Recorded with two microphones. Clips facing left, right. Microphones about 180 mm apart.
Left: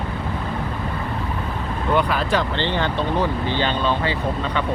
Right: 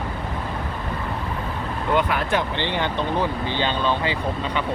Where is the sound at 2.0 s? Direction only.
20° right (ahead or behind).